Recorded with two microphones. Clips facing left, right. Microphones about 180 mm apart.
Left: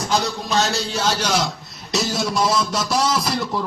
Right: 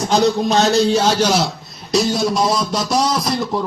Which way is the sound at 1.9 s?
Centre (ahead or behind).